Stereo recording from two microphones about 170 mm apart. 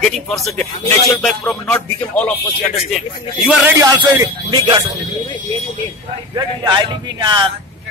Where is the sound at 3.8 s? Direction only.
20° right (ahead or behind).